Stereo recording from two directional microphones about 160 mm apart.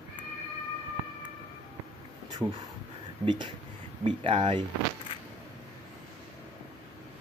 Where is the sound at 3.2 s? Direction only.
30° right (ahead or behind).